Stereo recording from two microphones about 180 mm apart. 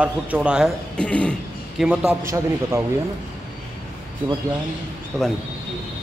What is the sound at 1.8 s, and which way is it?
Speech, 5° right (ahead or behind).